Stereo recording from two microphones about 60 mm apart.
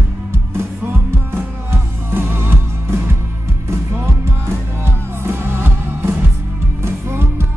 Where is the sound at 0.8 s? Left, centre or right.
Right.